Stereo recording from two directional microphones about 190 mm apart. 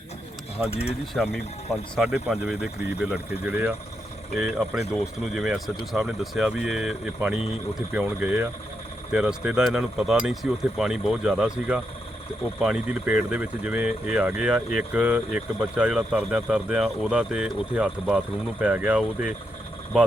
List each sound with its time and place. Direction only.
0.7 s speech: 30° left (ahead or behind)
1.1 s speech: centre (ahead or behind)